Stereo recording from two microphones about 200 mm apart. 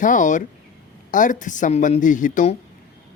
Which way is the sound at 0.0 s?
40° left (ahead or behind).